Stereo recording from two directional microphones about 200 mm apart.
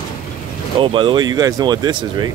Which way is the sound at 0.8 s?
25° right (ahead or behind).